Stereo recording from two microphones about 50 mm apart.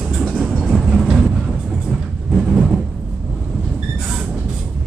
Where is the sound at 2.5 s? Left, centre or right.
Centre.